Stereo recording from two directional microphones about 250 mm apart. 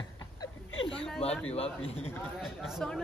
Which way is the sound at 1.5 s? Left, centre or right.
Left.